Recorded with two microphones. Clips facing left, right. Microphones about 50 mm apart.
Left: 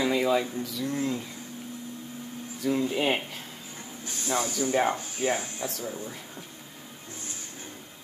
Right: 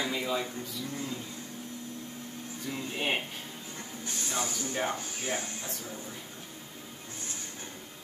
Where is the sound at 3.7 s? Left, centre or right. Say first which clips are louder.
Even; centre.